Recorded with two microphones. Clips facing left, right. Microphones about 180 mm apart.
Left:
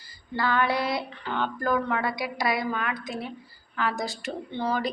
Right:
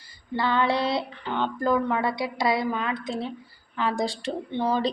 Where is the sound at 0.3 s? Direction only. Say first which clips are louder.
Right 2 dB; 25° right (ahead or behind).